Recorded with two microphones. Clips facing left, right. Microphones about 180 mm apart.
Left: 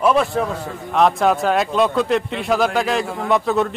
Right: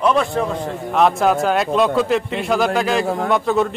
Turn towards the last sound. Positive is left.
turn(degrees=0)  # may be behind; listen again after turning